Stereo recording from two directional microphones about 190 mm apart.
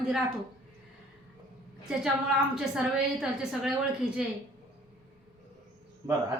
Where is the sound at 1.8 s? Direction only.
Centre (ahead or behind).